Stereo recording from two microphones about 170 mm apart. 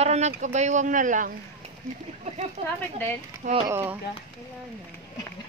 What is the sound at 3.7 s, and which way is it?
Speech, 15° right (ahead or behind).